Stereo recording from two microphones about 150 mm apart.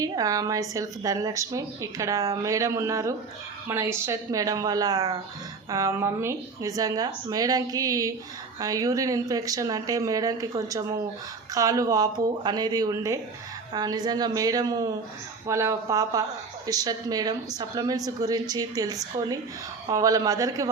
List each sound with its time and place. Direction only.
0.0 s speech: 25° right (ahead or behind)